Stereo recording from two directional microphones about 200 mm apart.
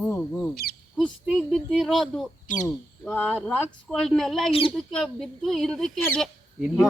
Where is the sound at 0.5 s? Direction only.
50° left (ahead or behind).